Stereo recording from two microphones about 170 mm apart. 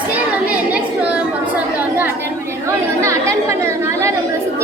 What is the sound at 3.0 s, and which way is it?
Chatter, 15° right (ahead or behind).